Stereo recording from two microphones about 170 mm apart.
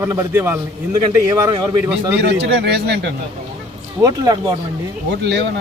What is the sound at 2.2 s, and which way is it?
Speech, 75° right (ahead or behind).